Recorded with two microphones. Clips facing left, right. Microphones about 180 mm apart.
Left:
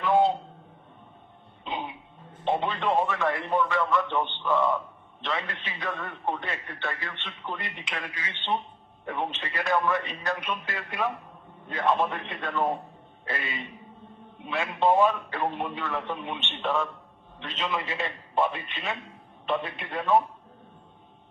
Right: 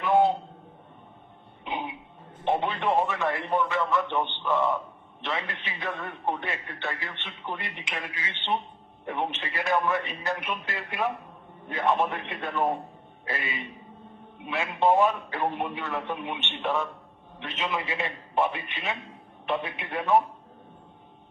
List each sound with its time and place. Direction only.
1.6 s throat clearing: 15° right (ahead or behind)
2.4 s a man's voice: 20° right (ahead or behind)